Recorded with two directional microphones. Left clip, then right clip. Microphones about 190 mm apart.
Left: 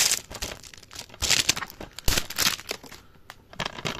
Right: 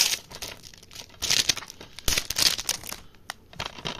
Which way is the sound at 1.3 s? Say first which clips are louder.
Even; 35° left (ahead or behind).